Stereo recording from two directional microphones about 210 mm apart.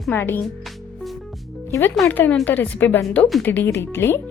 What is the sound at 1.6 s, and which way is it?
A woman's voice, 15° left (ahead or behind).